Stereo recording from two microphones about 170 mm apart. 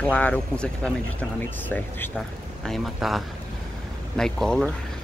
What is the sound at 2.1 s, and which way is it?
Speech, centre (ahead or behind).